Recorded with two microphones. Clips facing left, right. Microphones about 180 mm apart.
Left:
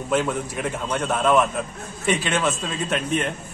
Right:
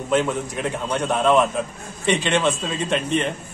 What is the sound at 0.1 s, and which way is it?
Speech, 5° left (ahead or behind).